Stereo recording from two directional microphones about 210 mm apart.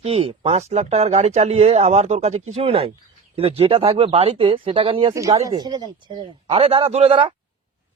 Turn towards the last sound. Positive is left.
turn(degrees=-25)  # may be behind; listen again after turning